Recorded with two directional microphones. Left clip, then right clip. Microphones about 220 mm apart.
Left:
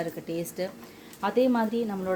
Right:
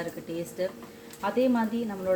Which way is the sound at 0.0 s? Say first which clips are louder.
Left 2 dB; 45° left (ahead or behind).